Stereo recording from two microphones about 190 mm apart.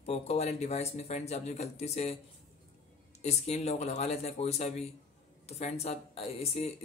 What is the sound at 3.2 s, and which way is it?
Speech, 35° left (ahead or behind).